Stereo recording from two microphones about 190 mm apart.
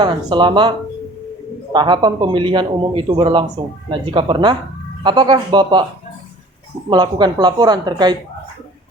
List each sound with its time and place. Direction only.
0.0 s a man's voice: 25° right (ahead or behind)
1.7 s a man's voice: 25° right (ahead or behind)
6.9 s a man's voice: 20° right (ahead or behind)